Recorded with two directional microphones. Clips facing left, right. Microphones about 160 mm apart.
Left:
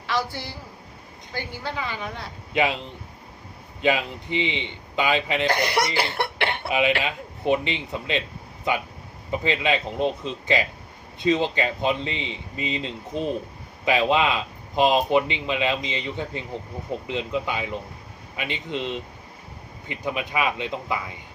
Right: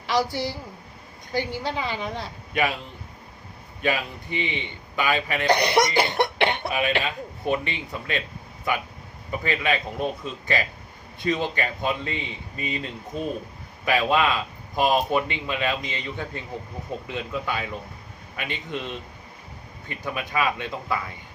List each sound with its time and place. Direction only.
0.1 s a woman's voice: 15° right (ahead or behind)
1.3 s cough: 15° right (ahead or behind)
2.5 s a man's voice: 20° left (ahead or behind)
3.8 s speech: 20° left (ahead or behind)
5.5 s cough: 20° right (ahead or behind)
6.7 s speech: 20° left (ahead or behind)
9.3 s speech: 20° left (ahead or behind)